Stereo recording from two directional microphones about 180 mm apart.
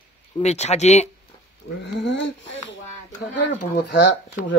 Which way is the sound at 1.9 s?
85° left.